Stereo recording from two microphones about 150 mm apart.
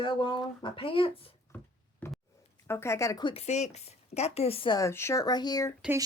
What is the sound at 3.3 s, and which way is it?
A woman's voice, 45° left (ahead or behind).